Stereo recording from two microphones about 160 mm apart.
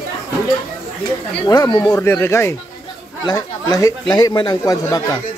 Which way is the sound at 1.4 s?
25° left (ahead or behind).